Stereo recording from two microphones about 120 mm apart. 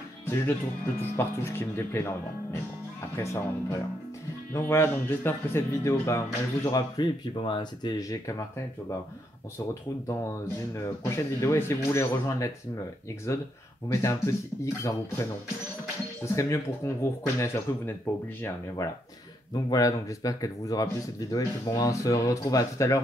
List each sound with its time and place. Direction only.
0.2 s speech: 20° left (ahead or behind)
7.0 s speech: 40° left (ahead or behind)
8.0 s speech: 30° left (ahead or behind)
10.0 s speech: 25° left (ahead or behind)
13.8 s speech: 25° left (ahead or behind)
16.3 s speech: 25° left (ahead or behind)